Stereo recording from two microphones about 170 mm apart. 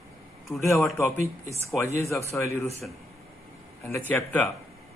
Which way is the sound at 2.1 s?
15° left (ahead or behind).